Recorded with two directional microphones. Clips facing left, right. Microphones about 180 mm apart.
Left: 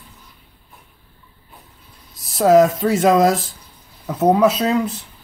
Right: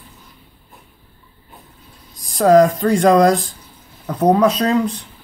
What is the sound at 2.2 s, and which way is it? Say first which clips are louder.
Speech: right 1 dB; 5° left (ahead or behind).